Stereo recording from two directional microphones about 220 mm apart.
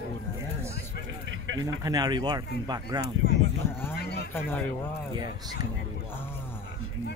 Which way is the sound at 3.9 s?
45° left (ahead or behind).